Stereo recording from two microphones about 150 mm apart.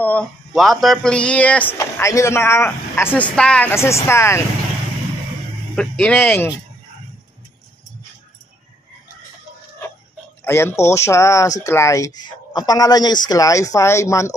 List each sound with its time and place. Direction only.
0.0 s speech: 10° left (ahead or behind)
1.8 s speech: 20° left (ahead or behind)
5.8 s speech: 5° left (ahead or behind)
10.4 s speech: 15° left (ahead or behind)